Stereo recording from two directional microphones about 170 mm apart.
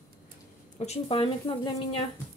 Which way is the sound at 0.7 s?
35° left (ahead or behind).